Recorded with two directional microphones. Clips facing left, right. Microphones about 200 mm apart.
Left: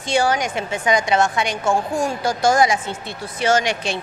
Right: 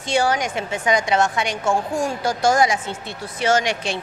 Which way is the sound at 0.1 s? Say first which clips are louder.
Left 1 dB; 20° left (ahead or behind).